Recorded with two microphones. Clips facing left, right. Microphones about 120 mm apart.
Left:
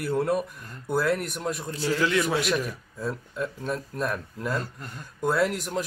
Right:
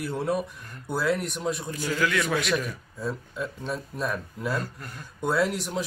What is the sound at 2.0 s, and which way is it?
Speech, 25° left (ahead or behind).